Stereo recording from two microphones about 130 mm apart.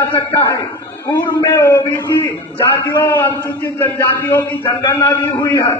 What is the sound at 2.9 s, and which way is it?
A man's voice, 25° left (ahead or behind).